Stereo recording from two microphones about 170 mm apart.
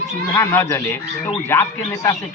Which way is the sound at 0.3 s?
15° left (ahead or behind).